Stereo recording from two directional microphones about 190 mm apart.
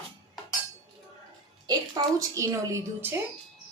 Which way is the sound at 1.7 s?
20° right (ahead or behind).